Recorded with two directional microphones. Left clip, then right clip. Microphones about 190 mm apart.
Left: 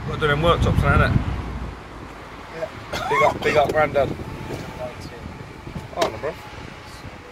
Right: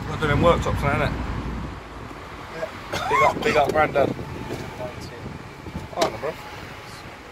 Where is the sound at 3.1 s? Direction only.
Centre (ahead or behind).